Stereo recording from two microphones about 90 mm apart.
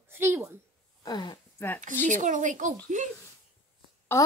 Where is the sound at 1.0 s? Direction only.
50° left (ahead or behind).